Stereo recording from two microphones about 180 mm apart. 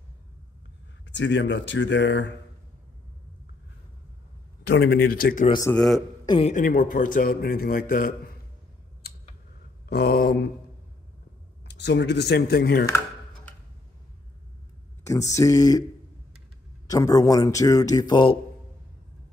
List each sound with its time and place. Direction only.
1.0 s speech: 85° left
4.6 s speech: 65° left (ahead or behind)
5.5 s speech: 20° left (ahead or behind)
5.8 s a man's voice: 5° left (ahead or behind)
6.2 s a woman's voice: 30° left (ahead or behind)
6.5 s a man's voice: 50° left (ahead or behind)
9.8 s speech: 60° left (ahead or behind)
11.6 s speech: 75° left (ahead or behind)
15.0 s speech: 20° left (ahead or behind)
16.8 s speech: 20° left (ahead or behind)